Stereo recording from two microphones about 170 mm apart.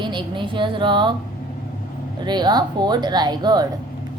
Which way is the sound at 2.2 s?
25° right (ahead or behind).